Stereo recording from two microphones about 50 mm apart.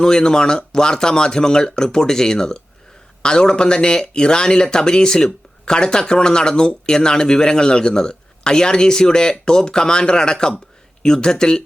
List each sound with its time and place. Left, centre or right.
0.0 s speech: centre